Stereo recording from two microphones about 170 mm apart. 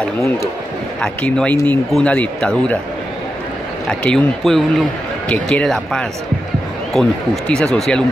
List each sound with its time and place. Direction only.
1.0 s speech: 5° left (ahead or behind)
4.0 s speech: 5° left (ahead or behind)